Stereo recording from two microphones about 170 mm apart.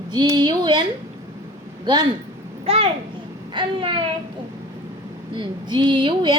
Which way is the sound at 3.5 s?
30° right (ahead or behind).